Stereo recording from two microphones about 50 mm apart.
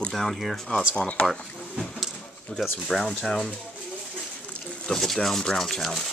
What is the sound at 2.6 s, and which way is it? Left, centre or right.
Speech, centre.